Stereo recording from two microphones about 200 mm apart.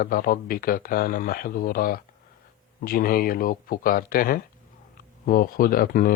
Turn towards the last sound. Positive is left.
turn(degrees=45)  # may be behind; listen again after turning